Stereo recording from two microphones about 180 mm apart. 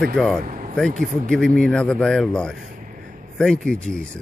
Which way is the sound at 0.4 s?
45° right (ahead or behind).